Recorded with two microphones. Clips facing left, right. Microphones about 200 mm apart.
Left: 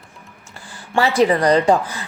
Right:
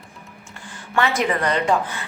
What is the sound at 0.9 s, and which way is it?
Speech, 35° left (ahead or behind).